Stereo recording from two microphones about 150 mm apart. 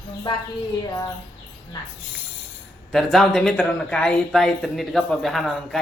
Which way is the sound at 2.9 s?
Centre (ahead or behind).